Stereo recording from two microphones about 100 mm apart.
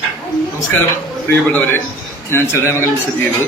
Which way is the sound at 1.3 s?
25° left (ahead or behind).